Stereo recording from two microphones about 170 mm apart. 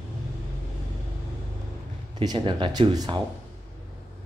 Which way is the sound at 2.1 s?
30° right (ahead or behind).